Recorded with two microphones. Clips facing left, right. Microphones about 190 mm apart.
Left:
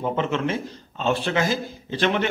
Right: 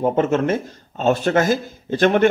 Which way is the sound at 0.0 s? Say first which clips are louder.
Right 6 dB; 45° right (ahead or behind).